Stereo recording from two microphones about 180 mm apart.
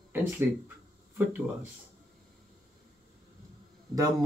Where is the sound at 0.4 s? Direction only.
10° right (ahead or behind).